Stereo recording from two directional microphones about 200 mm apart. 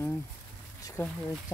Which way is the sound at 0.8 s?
15° left (ahead or behind).